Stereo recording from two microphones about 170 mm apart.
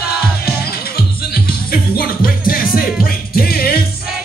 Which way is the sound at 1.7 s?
60° left (ahead or behind).